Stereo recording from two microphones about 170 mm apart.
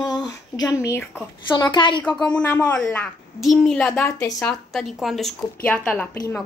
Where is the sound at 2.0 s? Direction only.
5° left (ahead or behind).